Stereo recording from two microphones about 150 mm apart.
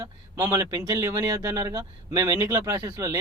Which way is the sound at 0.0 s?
20° right (ahead or behind).